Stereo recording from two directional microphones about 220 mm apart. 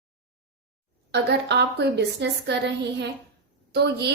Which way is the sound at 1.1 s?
50° right (ahead or behind).